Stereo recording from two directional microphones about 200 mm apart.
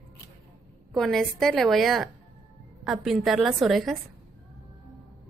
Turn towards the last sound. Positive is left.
turn(degrees=0)  # may be behind; listen again after turning